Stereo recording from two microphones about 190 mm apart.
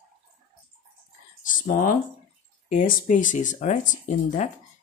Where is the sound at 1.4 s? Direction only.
45° left (ahead or behind).